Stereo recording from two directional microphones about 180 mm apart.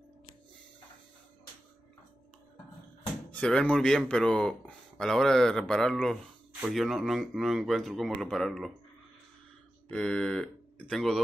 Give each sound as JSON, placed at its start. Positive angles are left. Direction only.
{"t": 3.3, "sound": "speech", "side_deg": 5}
{"t": 9.8, "sound": "speech", "side_deg": 5}